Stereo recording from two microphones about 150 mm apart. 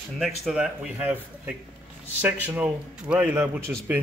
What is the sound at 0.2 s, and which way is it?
A man's voice, 5° right (ahead or behind).